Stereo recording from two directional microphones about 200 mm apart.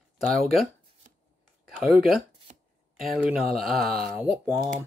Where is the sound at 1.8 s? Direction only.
Centre (ahead or behind).